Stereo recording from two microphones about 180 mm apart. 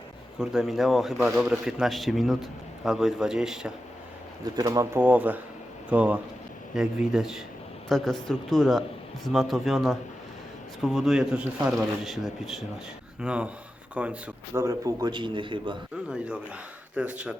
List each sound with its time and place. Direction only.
0.3 s a man's voice: 5° right (ahead or behind)
4.5 s a man's voice: 20° right (ahead or behind)
16.0 s a man's voice: 5° right (ahead or behind)